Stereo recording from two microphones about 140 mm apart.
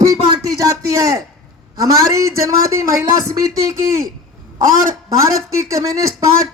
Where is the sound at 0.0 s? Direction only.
25° right (ahead or behind).